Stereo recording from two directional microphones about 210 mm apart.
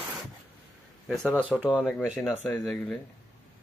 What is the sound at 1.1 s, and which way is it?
Speech, centre (ahead or behind).